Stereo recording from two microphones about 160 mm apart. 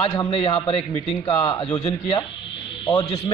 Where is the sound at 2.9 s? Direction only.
25° left (ahead or behind).